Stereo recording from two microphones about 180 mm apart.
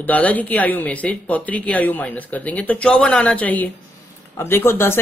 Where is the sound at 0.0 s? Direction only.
10° left (ahead or behind).